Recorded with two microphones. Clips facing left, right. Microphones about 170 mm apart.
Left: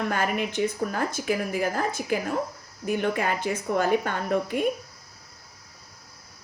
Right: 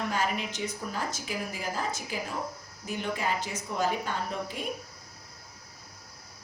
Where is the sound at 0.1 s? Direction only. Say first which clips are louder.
Left 4 dB; 55° left (ahead or behind).